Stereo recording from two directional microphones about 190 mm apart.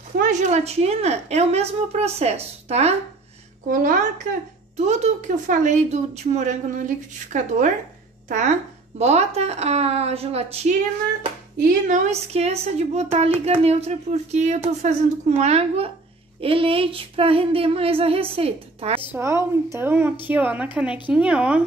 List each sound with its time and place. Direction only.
0.2 s speech: 40° right (ahead or behind)
3.6 s a woman's voice: 45° right (ahead or behind)
11.5 s speech: 45° right (ahead or behind)
16.3 s a sound: 30° right (ahead or behind)
19.1 s a woman's voice: 15° right (ahead or behind)